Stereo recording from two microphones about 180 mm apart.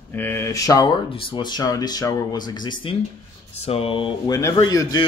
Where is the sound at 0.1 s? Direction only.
10° left (ahead or behind); by 4.1 s 30° left (ahead or behind).